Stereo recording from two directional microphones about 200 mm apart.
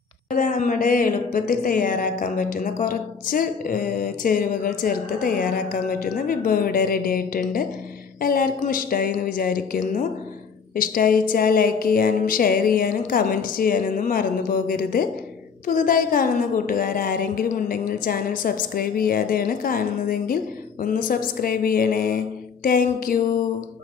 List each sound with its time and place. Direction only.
0.3 s a woman's voice: 40° left (ahead or behind)